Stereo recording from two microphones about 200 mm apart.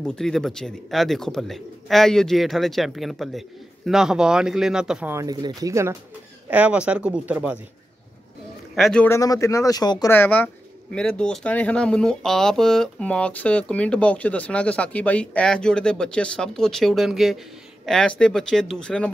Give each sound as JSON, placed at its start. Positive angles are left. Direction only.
{"t": 0.0, "sound": "speech", "side_deg": 5}
{"t": 5.1, "sound": "speech", "side_deg": -20}
{"t": 8.7, "sound": "speech", "side_deg": 5}